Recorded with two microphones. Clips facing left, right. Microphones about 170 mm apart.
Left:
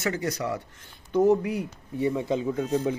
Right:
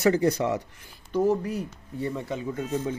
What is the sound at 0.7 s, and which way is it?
Speech, 10° right (ahead or behind).